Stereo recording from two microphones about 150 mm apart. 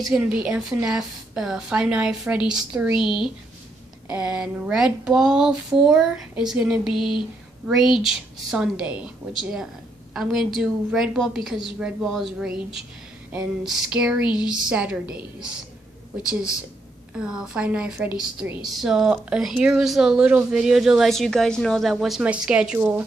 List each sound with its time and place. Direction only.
0.0 s speech: 5° right (ahead or behind)
6.9 s speech: 35° left (ahead or behind)
7.6 s a woman's voice: centre (ahead or behind)
10.1 s speech: centre (ahead or behind)
13.7 s a woman's voice: 5° right (ahead or behind)
16.3 s speech: 5° right (ahead or behind)